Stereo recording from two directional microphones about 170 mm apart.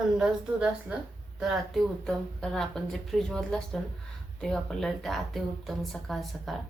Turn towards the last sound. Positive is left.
turn(degrees=0)  # may be behind; listen again after turning